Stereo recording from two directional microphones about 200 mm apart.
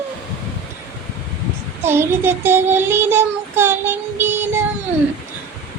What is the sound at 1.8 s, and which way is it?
Child singing, 10° right (ahead or behind).